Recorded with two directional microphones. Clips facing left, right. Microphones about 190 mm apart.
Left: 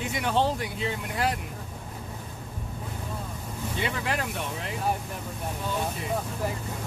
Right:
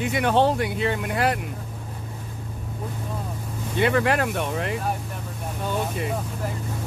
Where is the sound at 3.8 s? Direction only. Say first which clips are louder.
Right 10 dB; 65° right (ahead or behind).